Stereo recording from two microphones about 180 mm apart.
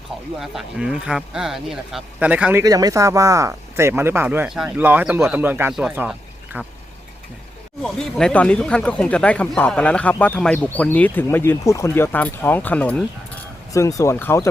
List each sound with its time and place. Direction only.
0.3 s speech: centre (ahead or behind)
7.9 s speech: 5° left (ahead or behind)